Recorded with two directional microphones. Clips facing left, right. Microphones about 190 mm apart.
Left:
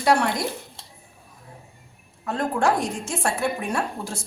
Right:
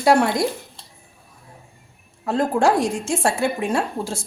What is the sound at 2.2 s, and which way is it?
A woman's voice, 30° right (ahead or behind).